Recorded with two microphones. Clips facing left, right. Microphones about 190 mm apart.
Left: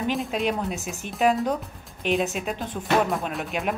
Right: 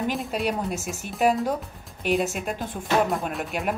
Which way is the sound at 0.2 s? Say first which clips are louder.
Left 1 dB; centre (ahead or behind).